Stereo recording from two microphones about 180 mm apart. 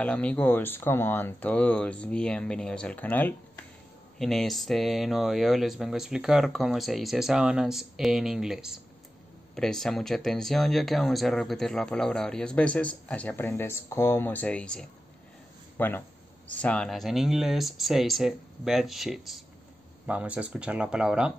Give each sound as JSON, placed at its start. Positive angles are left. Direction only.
{"t": 0.0, "sound": "speech", "side_deg": 5}